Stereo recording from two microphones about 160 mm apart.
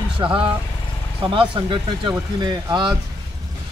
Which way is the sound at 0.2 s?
30° right (ahead or behind).